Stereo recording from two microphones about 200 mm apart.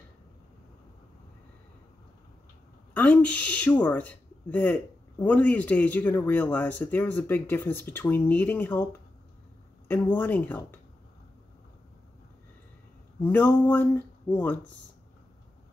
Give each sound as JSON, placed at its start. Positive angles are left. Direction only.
{"t": 2.9, "sound": "a man's voice", "side_deg": 5}
{"t": 13.2, "sound": "a man's voice", "side_deg": 10}